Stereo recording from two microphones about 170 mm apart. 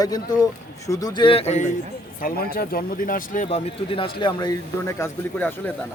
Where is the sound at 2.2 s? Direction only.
60° left (ahead or behind).